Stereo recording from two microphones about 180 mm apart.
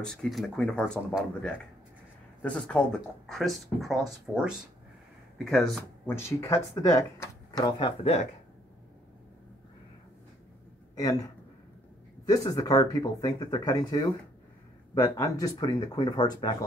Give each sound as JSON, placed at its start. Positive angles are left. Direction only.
{"t": 0.0, "sound": "speech", "side_deg": 5}
{"t": 6.0, "sound": "speech", "side_deg": 15}
{"t": 8.0, "sound": "speech", "side_deg": 35}
{"t": 12.3, "sound": "speech", "side_deg": 20}